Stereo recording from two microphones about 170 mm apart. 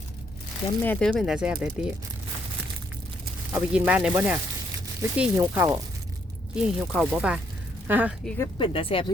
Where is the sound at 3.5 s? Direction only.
10° right (ahead or behind).